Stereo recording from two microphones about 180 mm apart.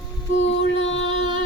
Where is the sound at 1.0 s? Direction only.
30° right (ahead or behind).